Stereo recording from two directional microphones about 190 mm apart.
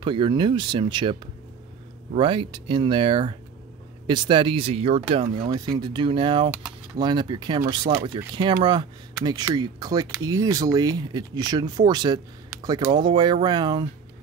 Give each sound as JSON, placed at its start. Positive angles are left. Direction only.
{"t": 0.0, "sound": "speech", "side_deg": -25}